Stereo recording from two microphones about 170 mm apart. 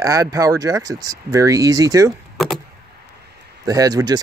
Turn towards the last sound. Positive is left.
turn(degrees=-20)  # may be behind; listen again after turning